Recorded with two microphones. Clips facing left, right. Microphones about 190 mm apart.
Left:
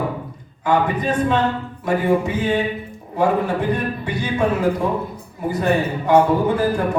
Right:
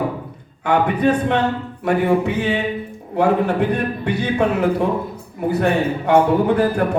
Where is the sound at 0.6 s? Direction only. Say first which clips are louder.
Right 2 dB; 65° right (ahead or behind).